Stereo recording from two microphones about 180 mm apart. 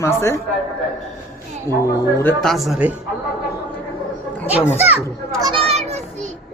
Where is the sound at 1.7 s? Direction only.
15° left (ahead or behind).